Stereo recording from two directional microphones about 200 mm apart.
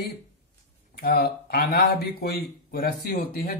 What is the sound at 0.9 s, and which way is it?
Speech, 50° left (ahead or behind).